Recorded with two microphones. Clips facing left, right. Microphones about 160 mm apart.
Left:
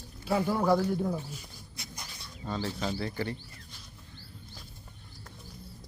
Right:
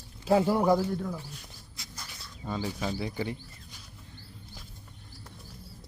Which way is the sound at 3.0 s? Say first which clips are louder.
Right 1 dB; 15° right (ahead or behind).